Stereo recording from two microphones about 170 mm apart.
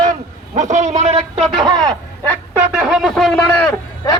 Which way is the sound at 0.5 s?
45° right (ahead or behind).